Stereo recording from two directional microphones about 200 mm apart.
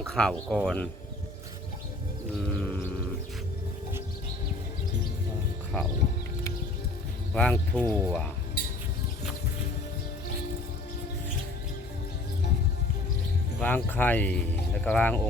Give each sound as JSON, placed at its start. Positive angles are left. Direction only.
{"t": 0.0, "sound": "speech", "side_deg": 0}
{"t": 2.5, "sound": "sheep", "side_deg": 5}
{"t": 7.3, "sound": "speech", "side_deg": 5}
{"t": 13.6, "sound": "speech", "side_deg": 10}